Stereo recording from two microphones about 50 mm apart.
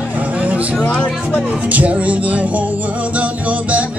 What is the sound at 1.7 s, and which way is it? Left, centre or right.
Speech, right.